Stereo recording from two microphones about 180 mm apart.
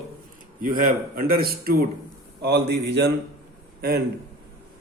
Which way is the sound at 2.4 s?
70° right (ahead or behind).